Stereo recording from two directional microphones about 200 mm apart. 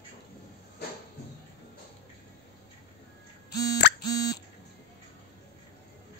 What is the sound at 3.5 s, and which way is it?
Plop, 20° left (ahead or behind).